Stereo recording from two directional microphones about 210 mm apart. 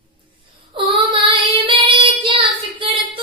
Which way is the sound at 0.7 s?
25° right (ahead or behind).